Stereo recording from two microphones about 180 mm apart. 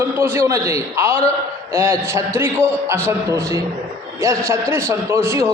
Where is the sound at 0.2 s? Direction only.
15° right (ahead or behind).